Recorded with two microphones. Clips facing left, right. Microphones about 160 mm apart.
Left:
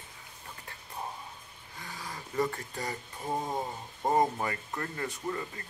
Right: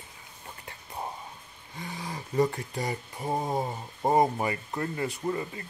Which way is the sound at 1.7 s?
20° right (ahead or behind).